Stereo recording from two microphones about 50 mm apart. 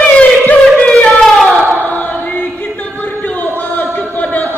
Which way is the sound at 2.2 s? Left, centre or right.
Left.